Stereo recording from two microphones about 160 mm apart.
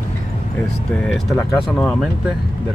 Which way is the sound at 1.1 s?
Centre (ahead or behind).